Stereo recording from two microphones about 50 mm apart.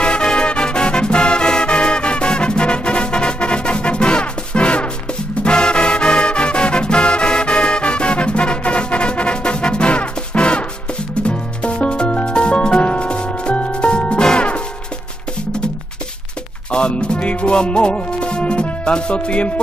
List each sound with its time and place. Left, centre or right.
0.0 s music: centre
16.7 s music: centre